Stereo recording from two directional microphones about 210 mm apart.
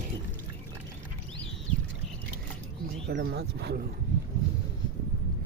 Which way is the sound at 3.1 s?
50° right (ahead or behind).